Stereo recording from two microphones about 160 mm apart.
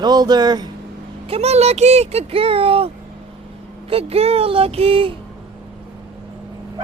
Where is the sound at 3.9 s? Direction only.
40° right (ahead or behind).